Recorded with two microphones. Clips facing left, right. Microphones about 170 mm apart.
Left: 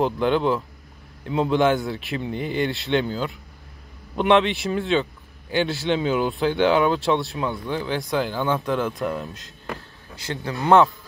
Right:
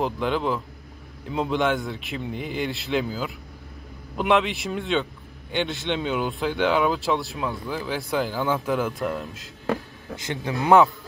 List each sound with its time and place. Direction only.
0.0 s speech: centre (ahead or behind)
10.1 s speech: 20° right (ahead or behind)